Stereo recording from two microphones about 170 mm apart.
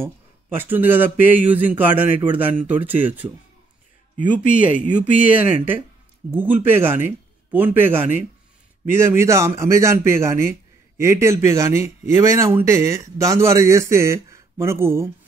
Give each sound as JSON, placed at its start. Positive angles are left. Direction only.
{"t": 0.0, "sound": "a man's voice", "side_deg": -10}
{"t": 4.4, "sound": "speech", "side_deg": 50}
{"t": 6.3, "sound": "a man's voice", "side_deg": -10}